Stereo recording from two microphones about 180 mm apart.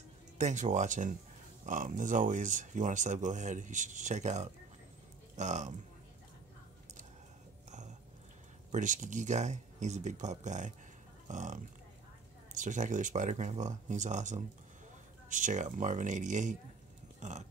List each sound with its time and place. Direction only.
0.4 s speech: 40° right (ahead or behind)
8.7 s speech: 45° right (ahead or behind)